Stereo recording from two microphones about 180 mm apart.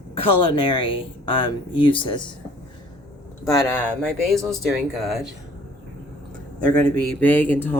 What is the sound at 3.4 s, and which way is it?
Speech, 15° left (ahead or behind).